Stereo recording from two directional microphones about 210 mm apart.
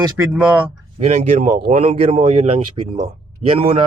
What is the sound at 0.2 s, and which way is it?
Speech, 10° right (ahead or behind).